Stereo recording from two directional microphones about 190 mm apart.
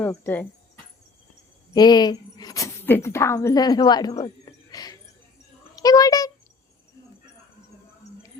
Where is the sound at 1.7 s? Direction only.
20° left (ahead or behind).